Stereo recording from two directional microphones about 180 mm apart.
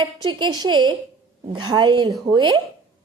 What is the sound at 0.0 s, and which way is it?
A woman's voice, 25° right (ahead or behind).